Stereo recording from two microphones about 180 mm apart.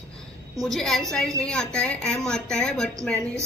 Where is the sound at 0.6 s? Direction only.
Centre (ahead or behind).